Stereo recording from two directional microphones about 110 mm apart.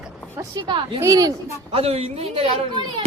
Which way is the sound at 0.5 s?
45° right (ahead or behind).